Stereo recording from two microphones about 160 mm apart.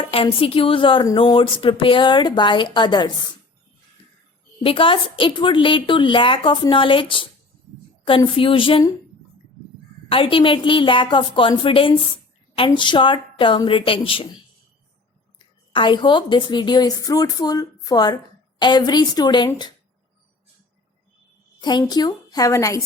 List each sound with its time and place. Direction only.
0.0 s a woman's voice: 35° left (ahead or behind)
4.6 s a woman's voice: 35° left (ahead or behind)
10.1 s a woman's voice: 35° left (ahead or behind)
15.4 s a woman's voice: 30° left (ahead or behind)
21.6 s a woman's voice: 25° left (ahead or behind)